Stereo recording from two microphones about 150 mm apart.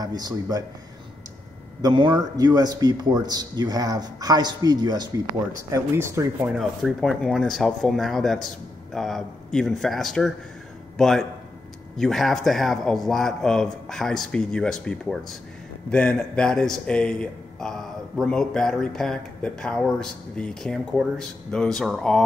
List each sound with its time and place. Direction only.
0.0 s speech: 25° right (ahead or behind)
1.8 s speech: 30° right (ahead or behind)
6.5 s speech: centre (ahead or behind)